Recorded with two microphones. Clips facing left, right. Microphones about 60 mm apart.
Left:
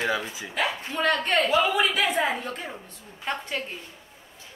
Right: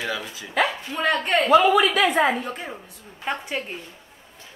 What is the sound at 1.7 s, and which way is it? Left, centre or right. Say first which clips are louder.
Speech: right 5 dB; right.